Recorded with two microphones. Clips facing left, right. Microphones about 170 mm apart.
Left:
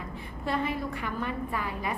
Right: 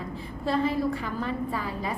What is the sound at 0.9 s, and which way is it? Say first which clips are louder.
A woman's voice: right 3 dB; 35° right (ahead or behind).